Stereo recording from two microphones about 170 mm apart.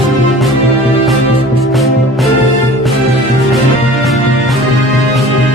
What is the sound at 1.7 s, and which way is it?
Music, centre (ahead or behind).